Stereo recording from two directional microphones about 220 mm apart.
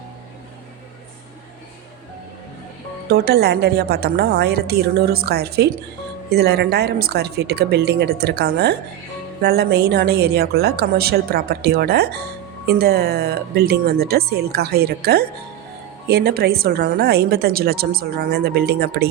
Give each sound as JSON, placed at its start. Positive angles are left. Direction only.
{"t": 3.1, "sound": "a woman's voice", "side_deg": -45}